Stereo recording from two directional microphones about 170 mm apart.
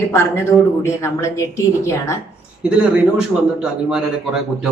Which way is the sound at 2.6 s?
5° right (ahead or behind).